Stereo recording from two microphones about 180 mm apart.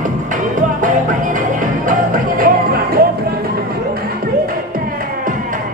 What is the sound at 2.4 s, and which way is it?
Music, 55° right (ahead or behind).